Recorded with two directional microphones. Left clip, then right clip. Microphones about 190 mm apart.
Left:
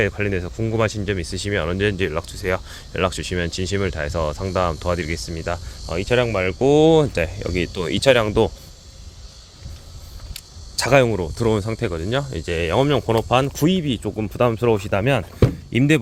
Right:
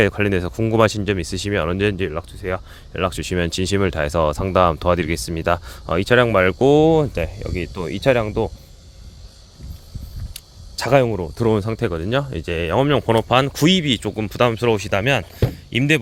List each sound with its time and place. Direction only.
0.0 s speech: 40° right (ahead or behind)
2.0 s speech: 15° right (ahead or behind)
3.1 s speech: 35° right (ahead or behind); by 6.6 s 50° right (ahead or behind)
6.6 s speech: 30° right (ahead or behind)
6.8 s speech: 15° right (ahead or behind)
10.3 s a sound: 20° right (ahead or behind)
11.3 s speech: 25° right (ahead or behind); by 16.0 s 5° left (ahead or behind)